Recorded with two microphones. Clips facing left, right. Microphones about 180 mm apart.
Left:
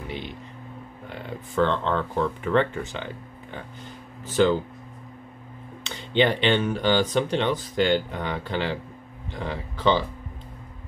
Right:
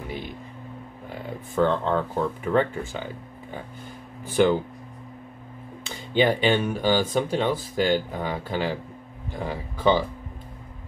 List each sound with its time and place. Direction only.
1.5 s speech: 10° right (ahead or behind)
4.3 s speech: 15° right (ahead or behind)
6.2 s speech: 10° right (ahead or behind)